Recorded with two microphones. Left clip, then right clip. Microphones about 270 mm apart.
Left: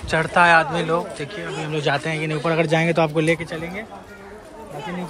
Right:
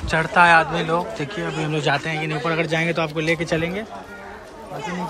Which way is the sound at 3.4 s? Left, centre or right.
Right.